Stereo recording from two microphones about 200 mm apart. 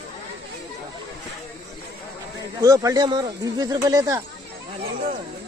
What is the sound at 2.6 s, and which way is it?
Speech, 15° right (ahead or behind).